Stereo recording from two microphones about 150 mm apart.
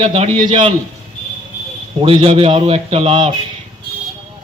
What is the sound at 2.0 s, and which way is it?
A man's voice, 40° right (ahead or behind).